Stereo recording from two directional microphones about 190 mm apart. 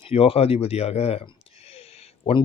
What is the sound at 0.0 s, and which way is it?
Speech, 30° left (ahead or behind).